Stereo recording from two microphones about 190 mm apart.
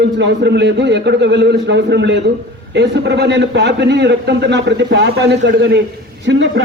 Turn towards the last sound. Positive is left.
turn(degrees=-70)  # may be behind; listen again after turning